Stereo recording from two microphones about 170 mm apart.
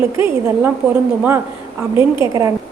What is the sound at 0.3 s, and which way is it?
Speech, 10° right (ahead or behind).